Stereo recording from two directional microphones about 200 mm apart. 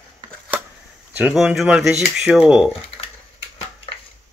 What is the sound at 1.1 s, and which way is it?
Speech, 5° right (ahead or behind).